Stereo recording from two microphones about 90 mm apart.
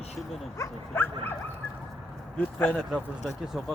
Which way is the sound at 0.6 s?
25° left (ahead or behind).